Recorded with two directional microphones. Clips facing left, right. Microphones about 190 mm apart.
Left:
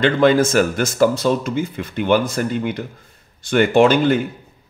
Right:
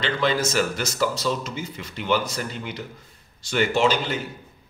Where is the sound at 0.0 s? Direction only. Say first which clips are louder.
Left 9 dB; 50° left (ahead or behind).